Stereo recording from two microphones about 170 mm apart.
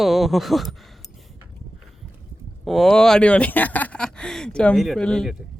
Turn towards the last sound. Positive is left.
turn(degrees=5)  # may be behind; listen again after turning